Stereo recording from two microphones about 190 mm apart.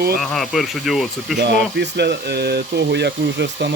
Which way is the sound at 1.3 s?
60° right (ahead or behind).